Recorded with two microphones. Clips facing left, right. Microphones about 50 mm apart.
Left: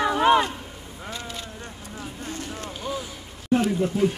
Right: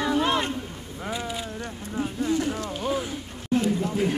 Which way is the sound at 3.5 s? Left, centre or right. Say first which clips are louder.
Left 3 dB; left.